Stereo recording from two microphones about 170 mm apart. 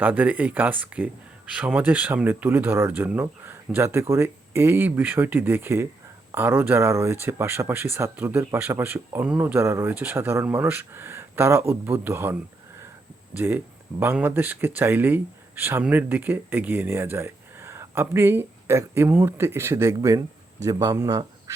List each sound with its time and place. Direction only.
0.0 s speech: 10° right (ahead or behind)